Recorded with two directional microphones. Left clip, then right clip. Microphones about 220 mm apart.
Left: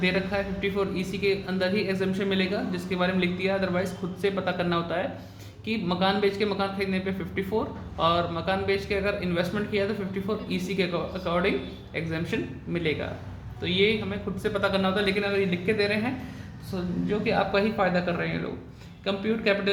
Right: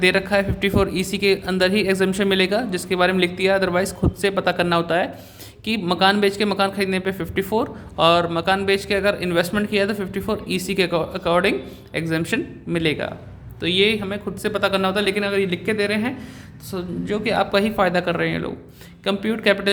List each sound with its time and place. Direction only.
0.0 s speech: 50° right (ahead or behind)